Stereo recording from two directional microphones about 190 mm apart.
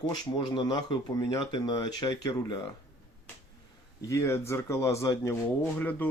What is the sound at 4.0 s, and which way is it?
Speech, 15° left (ahead or behind).